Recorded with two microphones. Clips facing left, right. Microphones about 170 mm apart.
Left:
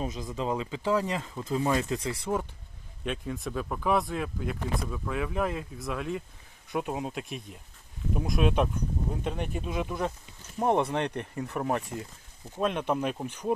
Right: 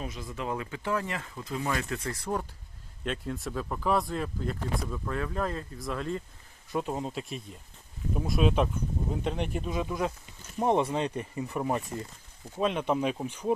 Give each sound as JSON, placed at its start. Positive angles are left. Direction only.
{"t": 0.1, "sound": "speech", "side_deg": 20}
{"t": 2.0, "sound": "speech", "side_deg": 5}
{"t": 10.8, "sound": "speech", "side_deg": -10}